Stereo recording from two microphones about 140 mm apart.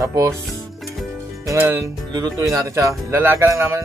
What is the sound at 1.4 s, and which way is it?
Speech, 20° right (ahead or behind).